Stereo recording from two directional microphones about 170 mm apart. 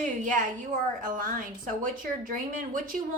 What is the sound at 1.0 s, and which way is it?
A woman's voice, 50° right (ahead or behind).